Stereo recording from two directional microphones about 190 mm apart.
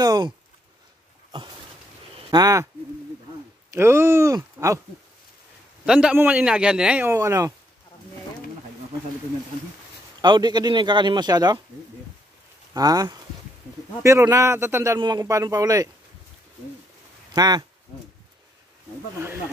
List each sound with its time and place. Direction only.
0.0 s speech: 20° right (ahead or behind)
2.3 s speech: 15° right (ahead or behind)
3.7 s speech: 15° right (ahead or behind)
5.9 s a man's voice: 5° right (ahead or behind)
10.2 s speech: 25° right (ahead or behind)
12.7 s speech: 20° right (ahead or behind)
17.3 s speech: 20° right (ahead or behind)